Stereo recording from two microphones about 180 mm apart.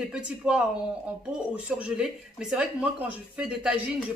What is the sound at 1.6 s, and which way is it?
Speech, 5° right (ahead or behind).